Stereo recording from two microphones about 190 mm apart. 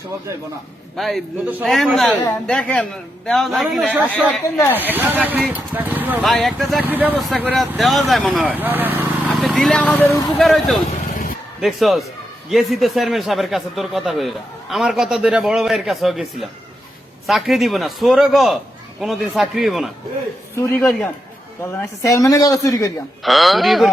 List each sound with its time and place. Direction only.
0.9 s a man's voice: centre (ahead or behind)
4.8 s speech: 10° right (ahead or behind)
6.8 s a man's voice: 10° right (ahead or behind)
9.4 s a man's voice: centre (ahead or behind)
11.1 s a sound: 50° left (ahead or behind)
11.6 s a man's voice: centre (ahead or behind)
20.6 s a woman's voice: 10° left (ahead or behind)
23.2 s a man's voice: centre (ahead or behind)